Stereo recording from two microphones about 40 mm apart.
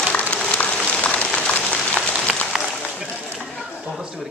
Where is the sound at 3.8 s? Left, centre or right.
Centre.